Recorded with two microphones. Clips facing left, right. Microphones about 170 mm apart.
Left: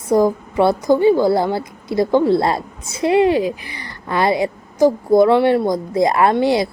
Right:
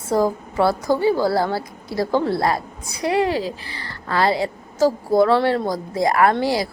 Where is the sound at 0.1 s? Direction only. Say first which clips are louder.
Left 4 dB; 20° left (ahead or behind).